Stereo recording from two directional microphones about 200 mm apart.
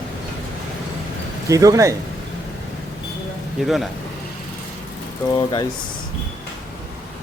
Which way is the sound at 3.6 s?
Centre (ahead or behind).